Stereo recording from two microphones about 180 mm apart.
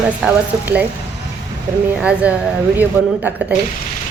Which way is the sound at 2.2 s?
10° right (ahead or behind).